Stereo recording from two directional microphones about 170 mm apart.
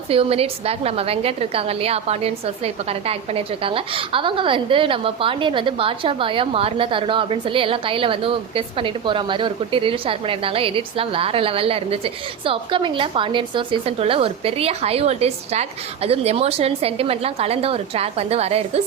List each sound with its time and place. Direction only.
0.1 s a woman's voice: 35° right (ahead or behind)